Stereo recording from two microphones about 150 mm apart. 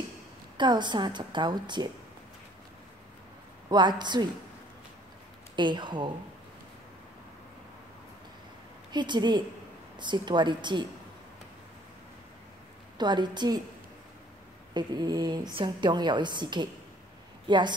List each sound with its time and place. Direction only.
0.6 s a woman's voice: 30° right (ahead or behind)
3.6 s a woman's voice: 30° right (ahead or behind)
5.6 s a woman's voice: 30° right (ahead or behind)
8.9 s a woman's voice: 30° right (ahead or behind)
12.9 s a woman's voice: 30° right (ahead or behind)
14.7 s a woman's voice: 30° right (ahead or behind)